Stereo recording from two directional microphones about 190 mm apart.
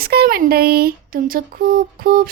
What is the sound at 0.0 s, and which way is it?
A woman's voice, 55° right (ahead or behind).